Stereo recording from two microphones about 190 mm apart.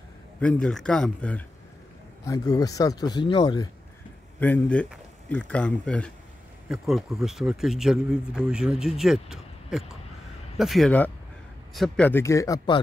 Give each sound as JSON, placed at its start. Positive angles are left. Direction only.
{"t": 0.4, "sound": "speech", "side_deg": 5}
{"t": 2.2, "sound": "speech", "side_deg": 15}
{"t": 4.4, "sound": "speech", "side_deg": 10}
{"t": 12.1, "sound": "speech", "side_deg": 15}